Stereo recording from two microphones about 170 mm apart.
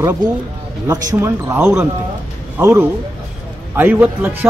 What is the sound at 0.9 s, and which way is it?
A man's voice, 15° right (ahead or behind).